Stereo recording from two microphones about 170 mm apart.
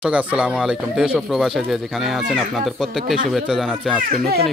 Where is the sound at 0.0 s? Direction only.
5° right (ahead or behind).